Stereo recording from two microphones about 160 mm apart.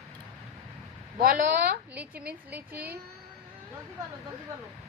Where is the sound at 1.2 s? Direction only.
70° right (ahead or behind).